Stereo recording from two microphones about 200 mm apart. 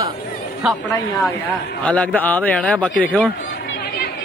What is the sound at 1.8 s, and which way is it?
A man's voice, 5° left (ahead or behind).